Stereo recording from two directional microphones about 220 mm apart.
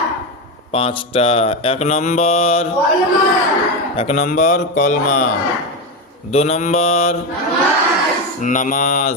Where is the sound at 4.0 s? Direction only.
30° left (ahead or behind).